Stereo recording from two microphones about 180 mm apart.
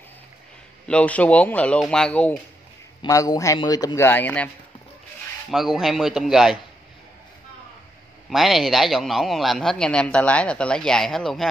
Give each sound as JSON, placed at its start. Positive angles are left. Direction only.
{"t": 0.8, "sound": "speech", "side_deg": 5}
{"t": 3.0, "sound": "a man's voice", "side_deg": 20}
{"t": 5.5, "sound": "speech", "side_deg": 0}
{"t": 8.3, "sound": "speech", "side_deg": 0}